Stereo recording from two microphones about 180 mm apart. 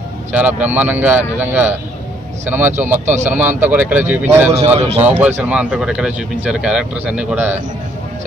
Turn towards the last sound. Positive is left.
turn(degrees=-10)  # may be behind; listen again after turning